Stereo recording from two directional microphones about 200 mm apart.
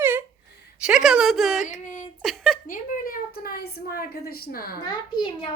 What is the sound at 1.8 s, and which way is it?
Speech, 40° left (ahead or behind).